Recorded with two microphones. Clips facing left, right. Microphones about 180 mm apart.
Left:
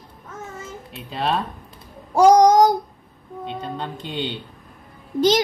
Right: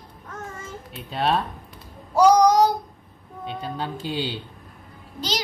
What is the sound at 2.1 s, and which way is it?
Child singing, 50° left (ahead or behind).